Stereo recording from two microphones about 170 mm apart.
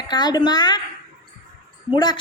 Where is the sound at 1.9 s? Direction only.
25° left (ahead or behind).